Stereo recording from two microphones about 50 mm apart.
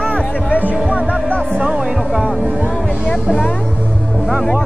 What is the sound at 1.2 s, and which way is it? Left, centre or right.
Music, left.